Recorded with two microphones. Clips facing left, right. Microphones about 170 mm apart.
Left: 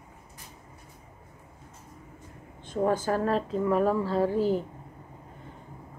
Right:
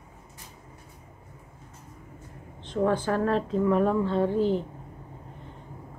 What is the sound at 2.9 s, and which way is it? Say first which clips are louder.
Speech: even; 40° left (ahead or behind).